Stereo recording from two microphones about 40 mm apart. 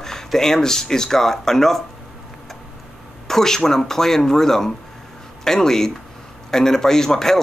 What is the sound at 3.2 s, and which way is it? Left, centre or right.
Speech, centre.